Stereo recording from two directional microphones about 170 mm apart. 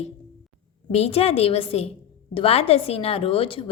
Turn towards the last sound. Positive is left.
turn(degrees=35)  # may be behind; listen again after turning